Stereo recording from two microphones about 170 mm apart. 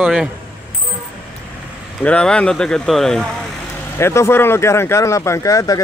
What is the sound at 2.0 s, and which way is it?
Speech, 5° left (ahead or behind).